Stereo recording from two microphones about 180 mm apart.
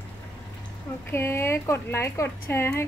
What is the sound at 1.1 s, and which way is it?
Speech, 15° left (ahead or behind).